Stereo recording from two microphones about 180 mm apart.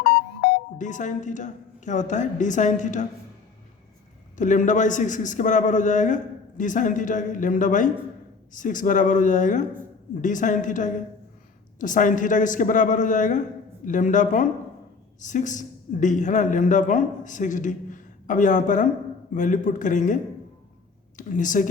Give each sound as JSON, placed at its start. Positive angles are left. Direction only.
{"t": 0.8, "sound": "a man's voice", "side_deg": 45}
{"t": 4.4, "sound": "a man's voice", "side_deg": 45}
{"t": 21.2, "sound": "a man's voice", "side_deg": 45}